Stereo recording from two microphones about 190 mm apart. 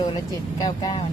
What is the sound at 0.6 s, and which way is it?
Speech, 20° left (ahead or behind).